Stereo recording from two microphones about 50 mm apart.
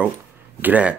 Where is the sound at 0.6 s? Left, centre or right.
Right.